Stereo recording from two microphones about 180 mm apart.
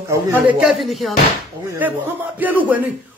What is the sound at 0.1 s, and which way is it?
A man's voice, 10° right (ahead or behind).